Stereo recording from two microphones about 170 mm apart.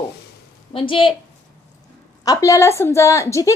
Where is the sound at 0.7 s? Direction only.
30° left (ahead or behind).